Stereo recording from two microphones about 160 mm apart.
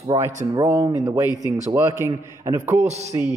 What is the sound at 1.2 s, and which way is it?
Speech, 20° left (ahead or behind).